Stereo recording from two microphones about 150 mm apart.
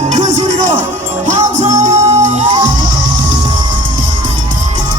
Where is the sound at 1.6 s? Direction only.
50° right (ahead or behind).